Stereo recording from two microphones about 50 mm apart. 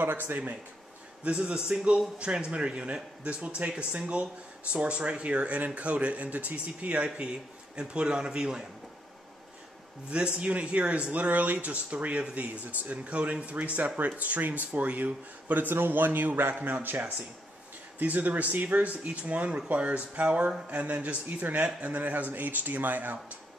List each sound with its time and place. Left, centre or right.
0.0 s speech: right
1.3 s speech: centre
7.7 s a man's voice: centre
10.0 s speech: right